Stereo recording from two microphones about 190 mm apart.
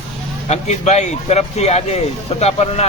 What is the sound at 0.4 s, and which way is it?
Speech, 35° left (ahead or behind).